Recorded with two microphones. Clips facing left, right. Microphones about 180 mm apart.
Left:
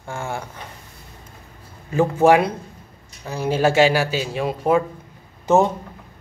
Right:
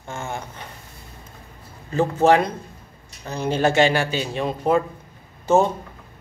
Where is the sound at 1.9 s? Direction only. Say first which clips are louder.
Left 2 dB; 10° left (ahead or behind).